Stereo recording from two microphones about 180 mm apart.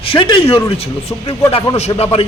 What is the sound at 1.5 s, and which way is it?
Speech, 30° left (ahead or behind).